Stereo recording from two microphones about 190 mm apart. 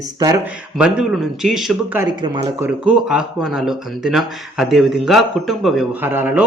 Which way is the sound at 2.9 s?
5° right (ahead or behind).